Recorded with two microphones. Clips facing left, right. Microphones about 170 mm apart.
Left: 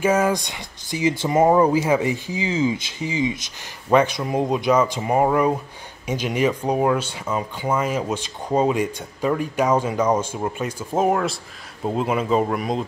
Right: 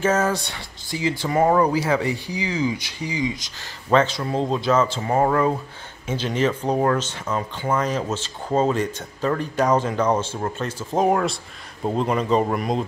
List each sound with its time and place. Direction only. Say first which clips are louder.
0.0 s speech: left 2 dB; 10° left (ahead or behind)